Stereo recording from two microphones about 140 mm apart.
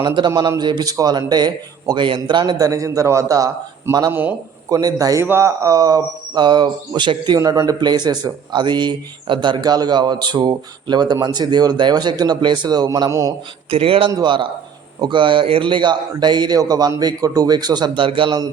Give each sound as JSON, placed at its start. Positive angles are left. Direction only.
{"t": 0.0, "sound": "a man's voice", "side_deg": -30}
{"t": 4.1, "sound": "a man's voice", "side_deg": -15}
{"t": 4.7, "sound": "a man's voice", "side_deg": -25}
{"t": 13.7, "sound": "speech", "side_deg": -40}